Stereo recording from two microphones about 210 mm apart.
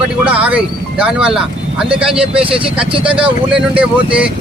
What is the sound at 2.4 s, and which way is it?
Speech, 25° right (ahead or behind).